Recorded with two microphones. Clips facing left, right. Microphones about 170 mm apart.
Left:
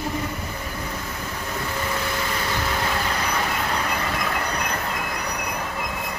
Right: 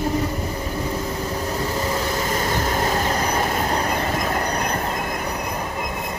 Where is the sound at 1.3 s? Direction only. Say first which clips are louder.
Right 5 dB; 35° right (ahead or behind).